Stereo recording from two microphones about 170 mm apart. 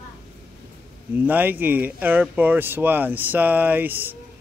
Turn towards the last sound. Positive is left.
turn(degrees=-10)  # may be behind; listen again after turning